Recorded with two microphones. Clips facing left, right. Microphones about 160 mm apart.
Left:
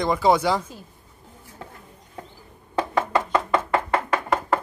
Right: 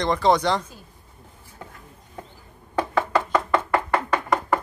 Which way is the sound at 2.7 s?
25° left (ahead or behind).